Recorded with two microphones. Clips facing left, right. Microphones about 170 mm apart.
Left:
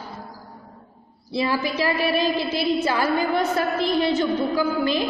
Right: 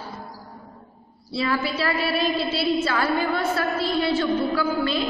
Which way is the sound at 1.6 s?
15° left (ahead or behind).